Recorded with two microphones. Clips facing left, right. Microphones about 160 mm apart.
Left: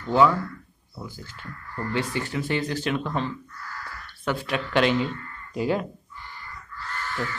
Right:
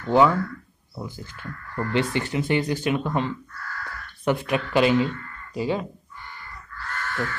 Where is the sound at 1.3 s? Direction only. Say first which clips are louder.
Right 4 dB; 60° right (ahead or behind).